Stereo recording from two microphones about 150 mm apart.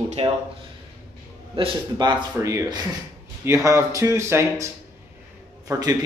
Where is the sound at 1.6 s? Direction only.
30° right (ahead or behind).